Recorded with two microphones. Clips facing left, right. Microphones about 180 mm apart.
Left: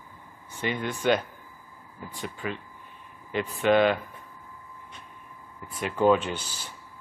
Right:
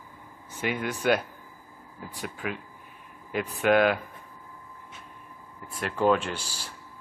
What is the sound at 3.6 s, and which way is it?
Speech, 5° right (ahead or behind).